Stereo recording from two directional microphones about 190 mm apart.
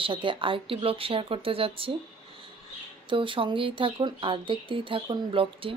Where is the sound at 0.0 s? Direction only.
25° right (ahead or behind).